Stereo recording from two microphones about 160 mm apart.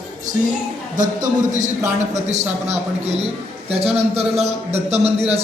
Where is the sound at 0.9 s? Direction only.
55° right (ahead or behind).